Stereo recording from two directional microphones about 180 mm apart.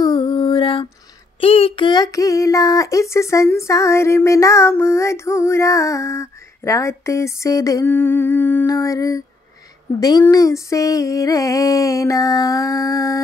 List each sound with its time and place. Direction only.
0.0 s mantra: 25° left (ahead or behind)
1.4 s a sound: 30° left (ahead or behind)
2.0 s speech: 15° left (ahead or behind)